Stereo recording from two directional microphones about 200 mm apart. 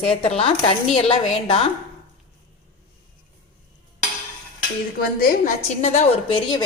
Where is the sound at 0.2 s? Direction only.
30° left (ahead or behind).